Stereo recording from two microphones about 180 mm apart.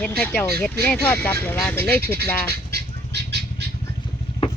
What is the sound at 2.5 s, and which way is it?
Bird, 65° right (ahead or behind).